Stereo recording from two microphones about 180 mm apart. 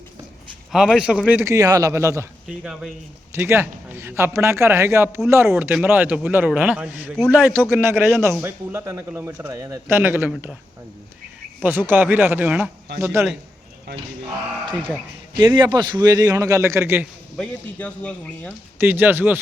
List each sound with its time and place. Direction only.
0.7 s a man's voice: centre (ahead or behind)
1.4 s a man's voice: 15° right (ahead or behind)
2.5 s a man's voice: 5° right (ahead or behind)
11.6 s a man's voice: 10° right (ahead or behind)
15.4 s a man's voice: 25° right (ahead or behind)
17.3 s speech: 5° left (ahead or behind)
18.8 s a man's voice: 10° right (ahead or behind)